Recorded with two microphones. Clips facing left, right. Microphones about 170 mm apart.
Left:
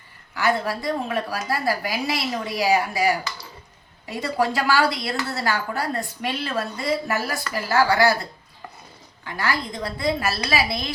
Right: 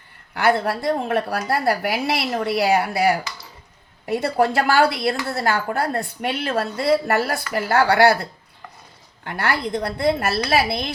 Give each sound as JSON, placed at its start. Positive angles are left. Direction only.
{"t": 0.3, "sound": "a woman's voice", "side_deg": -60}